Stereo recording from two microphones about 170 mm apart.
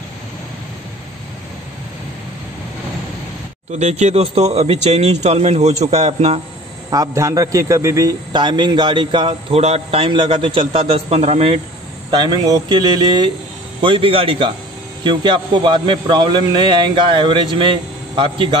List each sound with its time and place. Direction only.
3.7 s speech: 40° right (ahead or behind)
6.9 s a man's voice: 20° right (ahead or behind); by 11.6 s 35° right (ahead or behind)
12.1 s a man's voice: 25° right (ahead or behind)